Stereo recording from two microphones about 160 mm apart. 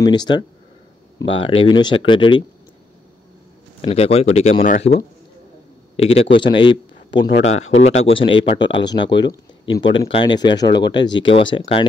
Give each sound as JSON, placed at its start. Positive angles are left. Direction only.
{"t": 0.0, "sound": "speech", "side_deg": 25}
{"t": 3.8, "sound": "speech", "side_deg": 40}
{"t": 5.9, "sound": "a man's voice", "side_deg": 35}
{"t": 7.4, "sound": "speech", "side_deg": 45}